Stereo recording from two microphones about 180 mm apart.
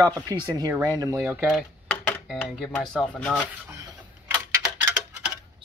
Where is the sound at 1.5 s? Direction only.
5° left (ahead or behind).